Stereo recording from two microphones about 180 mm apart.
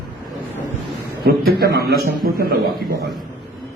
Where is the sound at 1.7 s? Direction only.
60° right (ahead or behind).